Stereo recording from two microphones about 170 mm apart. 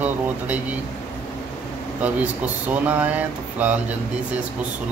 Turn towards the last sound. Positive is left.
turn(degrees=-10)  # may be behind; listen again after turning